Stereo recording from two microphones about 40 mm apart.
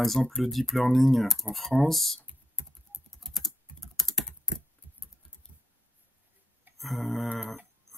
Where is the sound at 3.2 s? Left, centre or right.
Centre.